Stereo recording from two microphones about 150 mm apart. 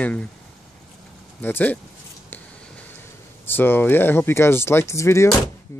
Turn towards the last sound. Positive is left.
turn(degrees=20)  # may be behind; listen again after turning